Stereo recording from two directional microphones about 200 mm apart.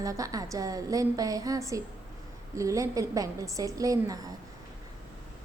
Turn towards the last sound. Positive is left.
turn(degrees=-15)  # may be behind; listen again after turning